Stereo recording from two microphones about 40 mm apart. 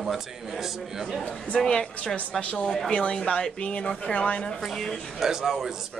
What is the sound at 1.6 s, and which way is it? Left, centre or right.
A woman's voice, centre.